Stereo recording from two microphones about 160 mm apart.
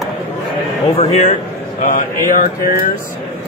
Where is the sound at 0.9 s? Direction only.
40° left (ahead or behind).